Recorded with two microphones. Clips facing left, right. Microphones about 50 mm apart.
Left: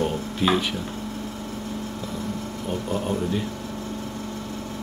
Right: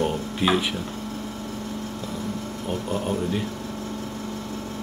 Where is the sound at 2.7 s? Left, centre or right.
Centre.